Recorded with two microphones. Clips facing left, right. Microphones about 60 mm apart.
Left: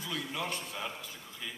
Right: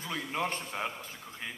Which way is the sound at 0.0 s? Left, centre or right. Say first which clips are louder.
Right 3 dB; right.